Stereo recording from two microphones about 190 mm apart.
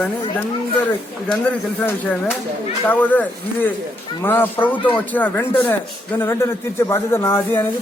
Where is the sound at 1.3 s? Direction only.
10° left (ahead or behind).